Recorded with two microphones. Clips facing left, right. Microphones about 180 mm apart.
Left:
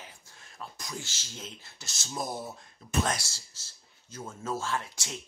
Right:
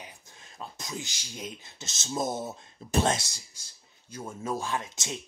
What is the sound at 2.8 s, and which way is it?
Speech, 30° right (ahead or behind).